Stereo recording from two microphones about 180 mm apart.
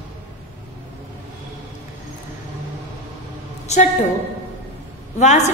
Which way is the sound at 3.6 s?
40° left (ahead or behind).